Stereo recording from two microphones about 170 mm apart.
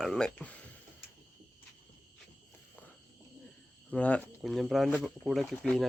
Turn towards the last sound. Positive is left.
turn(degrees=5)  # may be behind; listen again after turning